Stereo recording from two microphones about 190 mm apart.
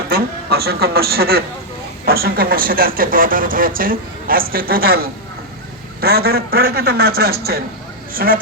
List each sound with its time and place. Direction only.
0.1 s a man's voice: 55° right (ahead or behind)